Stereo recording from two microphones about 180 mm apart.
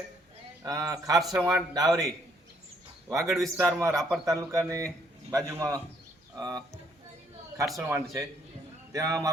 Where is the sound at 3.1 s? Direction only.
15° right (ahead or behind).